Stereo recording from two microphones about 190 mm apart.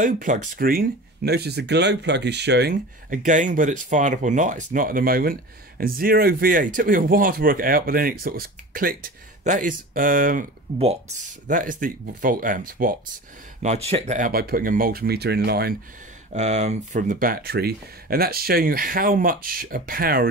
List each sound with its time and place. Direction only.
0.0 s speech: 40° right (ahead or behind); by 2.7 s 65° right (ahead or behind)
2.7 s speech: 45° right (ahead or behind)
13.6 s speech: 35° right (ahead or behind); by 15.7 s 55° right (ahead or behind)
16.3 s speech: 35° right (ahead or behind)